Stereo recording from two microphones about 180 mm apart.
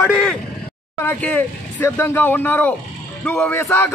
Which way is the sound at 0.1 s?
5° left (ahead or behind).